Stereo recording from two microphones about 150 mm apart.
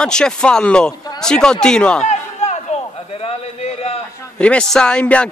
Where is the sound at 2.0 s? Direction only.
50° left (ahead or behind).